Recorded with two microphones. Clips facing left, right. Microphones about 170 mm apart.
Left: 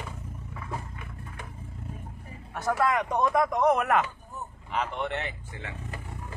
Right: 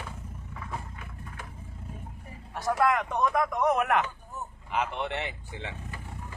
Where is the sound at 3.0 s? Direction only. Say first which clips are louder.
Left 2 dB; 20° left (ahead or behind).